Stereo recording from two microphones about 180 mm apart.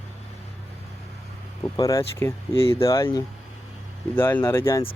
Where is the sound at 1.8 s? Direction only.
20° left (ahead or behind).